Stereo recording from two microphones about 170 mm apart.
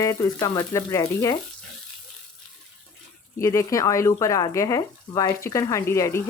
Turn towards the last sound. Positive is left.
turn(degrees=15)  # may be behind; listen again after turning